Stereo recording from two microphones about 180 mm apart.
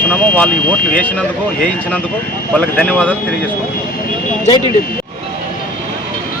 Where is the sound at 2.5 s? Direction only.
5° left (ahead or behind).